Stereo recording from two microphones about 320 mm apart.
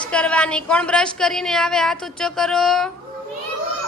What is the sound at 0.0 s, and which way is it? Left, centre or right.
A woman's voice, centre.